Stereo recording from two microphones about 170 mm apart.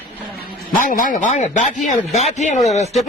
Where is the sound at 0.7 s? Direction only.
50° left (ahead or behind).